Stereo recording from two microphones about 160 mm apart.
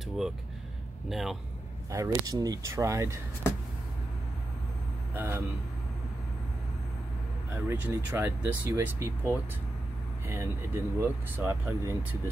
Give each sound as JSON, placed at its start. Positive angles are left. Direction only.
{"t": 1.0, "sound": "a man's voice", "side_deg": 0}
{"t": 1.9, "sound": "speech", "side_deg": -20}
{"t": 5.1, "sound": "speech", "side_deg": -15}
{"t": 7.7, "sound": "speech", "side_deg": -10}